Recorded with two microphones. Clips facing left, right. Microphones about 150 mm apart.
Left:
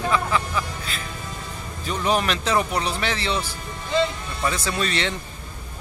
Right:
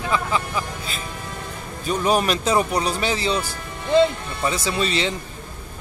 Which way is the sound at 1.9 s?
10° right (ahead or behind).